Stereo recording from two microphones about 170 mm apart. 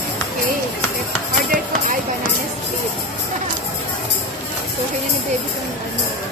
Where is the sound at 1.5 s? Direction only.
50° right (ahead or behind).